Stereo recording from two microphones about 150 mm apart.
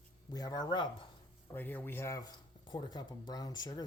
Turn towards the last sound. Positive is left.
turn(degrees=25)  # may be behind; listen again after turning